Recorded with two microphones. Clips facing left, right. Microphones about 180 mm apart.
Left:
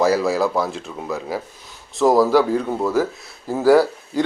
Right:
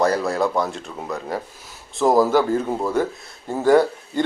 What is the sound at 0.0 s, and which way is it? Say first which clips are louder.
A man's voice: left 2 dB; 5° left (ahead or behind).